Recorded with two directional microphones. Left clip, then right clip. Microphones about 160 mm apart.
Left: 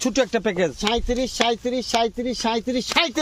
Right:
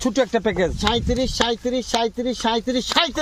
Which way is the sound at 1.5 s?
35° left (ahead or behind).